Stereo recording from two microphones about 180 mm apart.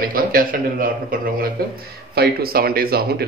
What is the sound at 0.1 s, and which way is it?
A man's voice, 55° right (ahead or behind).